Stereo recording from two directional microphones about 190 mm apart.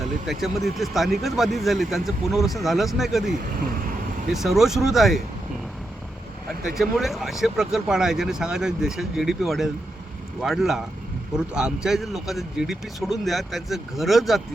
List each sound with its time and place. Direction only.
0.3 s speech: centre (ahead or behind)
3.3 s speech: 50° right (ahead or behind)
4.3 s speech: centre (ahead or behind)
6.5 s speech: centre (ahead or behind)